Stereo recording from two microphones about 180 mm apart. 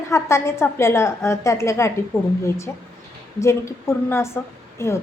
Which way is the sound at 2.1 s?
Centre (ahead or behind).